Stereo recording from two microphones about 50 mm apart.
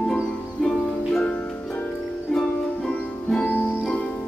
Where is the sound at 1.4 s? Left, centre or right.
Left.